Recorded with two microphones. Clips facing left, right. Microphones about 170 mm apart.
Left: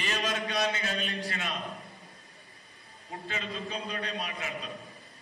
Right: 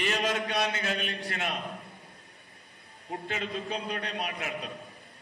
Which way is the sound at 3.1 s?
60° right (ahead or behind).